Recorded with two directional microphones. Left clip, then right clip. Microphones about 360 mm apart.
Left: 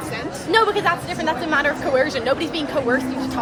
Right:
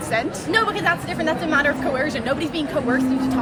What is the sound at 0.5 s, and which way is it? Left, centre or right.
A woman's voice, centre.